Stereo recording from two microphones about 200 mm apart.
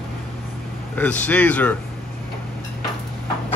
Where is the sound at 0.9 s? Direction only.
10° left (ahead or behind).